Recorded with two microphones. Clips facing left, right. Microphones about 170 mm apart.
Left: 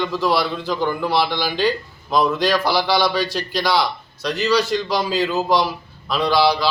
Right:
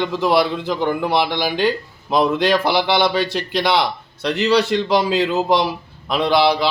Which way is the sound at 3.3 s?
60° right (ahead or behind).